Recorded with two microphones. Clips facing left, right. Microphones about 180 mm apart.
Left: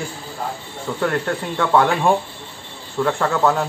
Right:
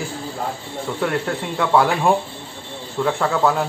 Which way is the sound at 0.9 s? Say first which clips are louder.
Left 1 dB; 5° right (ahead or behind).